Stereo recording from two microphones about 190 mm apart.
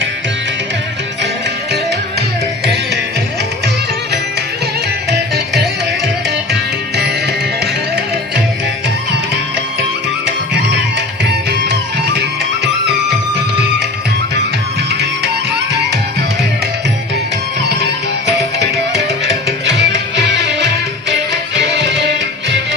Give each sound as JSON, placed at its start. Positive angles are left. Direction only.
{"t": 6.5, "sound": "music", "side_deg": -60}
{"t": 19.6, "sound": "music", "side_deg": -65}